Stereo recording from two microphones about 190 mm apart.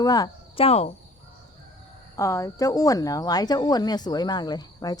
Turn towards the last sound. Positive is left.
turn(degrees=20)  # may be behind; listen again after turning